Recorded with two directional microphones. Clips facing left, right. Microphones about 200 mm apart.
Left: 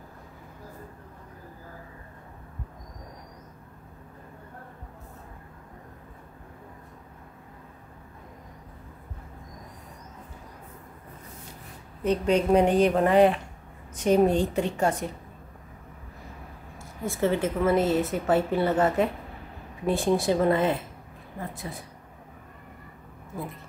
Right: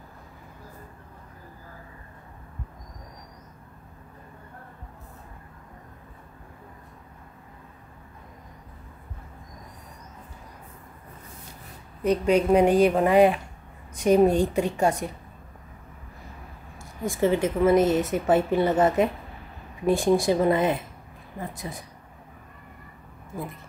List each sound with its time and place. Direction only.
12.0 s speech: 10° right (ahead or behind)
16.7 s speech: 15° right (ahead or behind)